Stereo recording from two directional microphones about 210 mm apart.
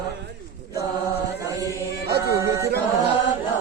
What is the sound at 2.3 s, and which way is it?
A capella, 15° right (ahead or behind).